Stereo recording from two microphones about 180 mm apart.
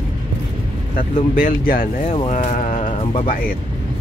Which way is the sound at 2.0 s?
35° left (ahead or behind).